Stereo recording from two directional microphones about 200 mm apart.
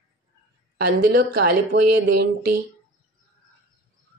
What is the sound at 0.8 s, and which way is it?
A woman's voice, 50° right (ahead or behind).